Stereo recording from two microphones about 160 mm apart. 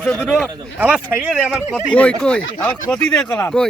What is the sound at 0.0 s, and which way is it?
Speech, 5° left (ahead or behind).